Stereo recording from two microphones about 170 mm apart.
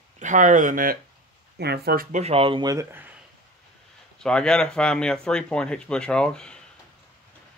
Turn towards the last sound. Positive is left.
turn(degrees=5)  # may be behind; listen again after turning